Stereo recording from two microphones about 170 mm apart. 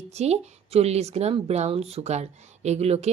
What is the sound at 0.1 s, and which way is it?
A woman's voice, 40° right (ahead or behind).